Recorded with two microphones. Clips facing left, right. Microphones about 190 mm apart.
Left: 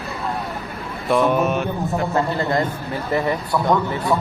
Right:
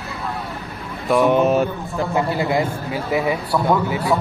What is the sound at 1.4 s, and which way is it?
Mantra, 35° right (ahead or behind).